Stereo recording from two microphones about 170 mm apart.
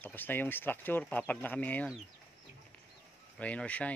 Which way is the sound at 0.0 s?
10° left (ahead or behind).